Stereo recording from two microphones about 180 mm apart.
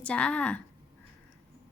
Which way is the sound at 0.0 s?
5° left (ahead or behind).